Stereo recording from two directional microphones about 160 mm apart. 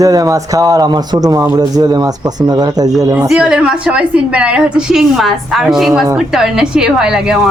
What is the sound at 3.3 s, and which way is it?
A woman's voice, 5° right (ahead or behind).